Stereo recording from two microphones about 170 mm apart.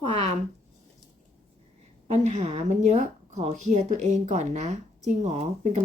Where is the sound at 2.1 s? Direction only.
40° right (ahead or behind).